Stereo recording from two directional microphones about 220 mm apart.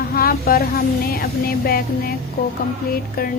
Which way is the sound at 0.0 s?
45° left (ahead or behind).